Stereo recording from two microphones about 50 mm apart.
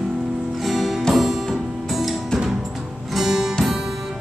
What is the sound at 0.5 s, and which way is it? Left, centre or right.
Music, centre.